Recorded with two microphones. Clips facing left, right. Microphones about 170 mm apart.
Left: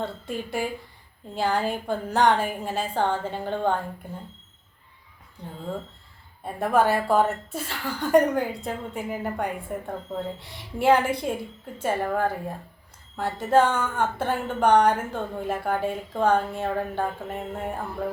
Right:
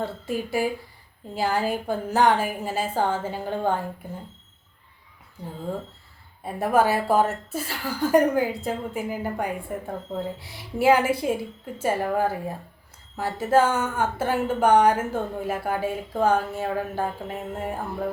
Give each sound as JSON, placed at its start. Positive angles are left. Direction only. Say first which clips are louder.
{"t": 0.0, "sound": "speech", "louder": "right 2 dB", "side_deg": -5}
{"t": 6.4, "sound": "speech", "louder": "right 1 dB", "side_deg": -5}